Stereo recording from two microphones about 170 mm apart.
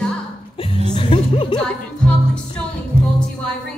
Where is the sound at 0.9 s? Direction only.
30° left (ahead or behind).